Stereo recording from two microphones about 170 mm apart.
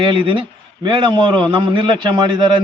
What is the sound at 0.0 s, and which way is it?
A man's voice, 30° right (ahead or behind).